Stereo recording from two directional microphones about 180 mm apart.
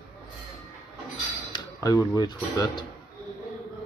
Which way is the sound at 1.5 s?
20° left (ahead or behind).